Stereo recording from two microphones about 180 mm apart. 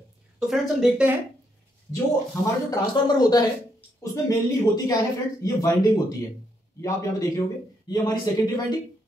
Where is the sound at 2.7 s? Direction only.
20° left (ahead or behind).